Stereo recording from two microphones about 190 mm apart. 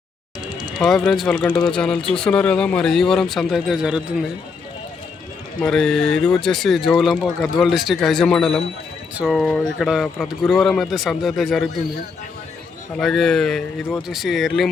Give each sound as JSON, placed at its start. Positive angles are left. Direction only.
{"t": 0.8, "sound": "speech", "side_deg": 5}
{"t": 5.5, "sound": "speech", "side_deg": 5}
{"t": 13.0, "sound": "speech", "side_deg": 0}